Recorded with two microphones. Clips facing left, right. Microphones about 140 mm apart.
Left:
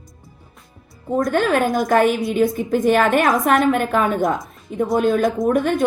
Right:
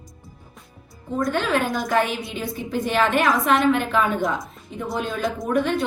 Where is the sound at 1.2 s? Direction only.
45° left (ahead or behind).